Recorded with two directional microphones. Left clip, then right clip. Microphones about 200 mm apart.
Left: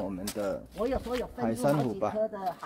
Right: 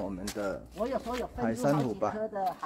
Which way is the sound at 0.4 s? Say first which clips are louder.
Left 2 dB; 5° left (ahead or behind).